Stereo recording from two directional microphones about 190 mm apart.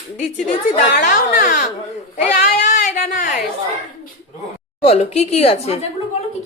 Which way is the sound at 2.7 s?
50° left (ahead or behind).